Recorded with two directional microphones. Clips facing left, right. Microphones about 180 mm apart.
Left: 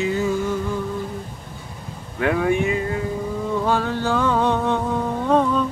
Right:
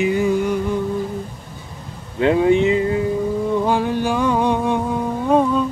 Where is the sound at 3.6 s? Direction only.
15° right (ahead or behind).